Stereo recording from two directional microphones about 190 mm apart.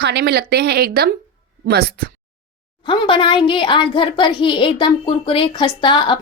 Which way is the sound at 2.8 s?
25° left (ahead or behind).